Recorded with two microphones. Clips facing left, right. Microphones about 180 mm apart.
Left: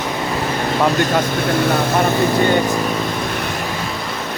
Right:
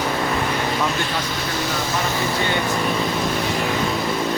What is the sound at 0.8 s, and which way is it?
Speech, 50° left (ahead or behind).